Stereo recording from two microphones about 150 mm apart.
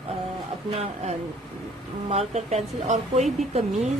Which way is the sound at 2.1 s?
45° right (ahead or behind).